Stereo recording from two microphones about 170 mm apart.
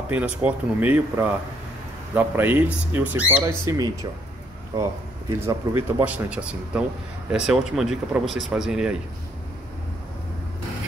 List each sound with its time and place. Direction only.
0.1 s speech: 10° right (ahead or behind)
3.4 s speech: 20° right (ahead or behind)
5.3 s speech: 15° right (ahead or behind)